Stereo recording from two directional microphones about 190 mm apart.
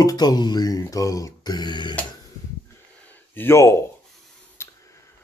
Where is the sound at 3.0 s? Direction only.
10° left (ahead or behind).